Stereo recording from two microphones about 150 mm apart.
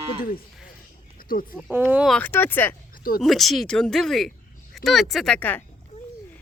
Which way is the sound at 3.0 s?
75° left (ahead or behind).